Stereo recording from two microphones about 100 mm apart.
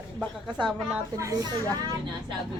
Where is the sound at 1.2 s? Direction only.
30° right (ahead or behind).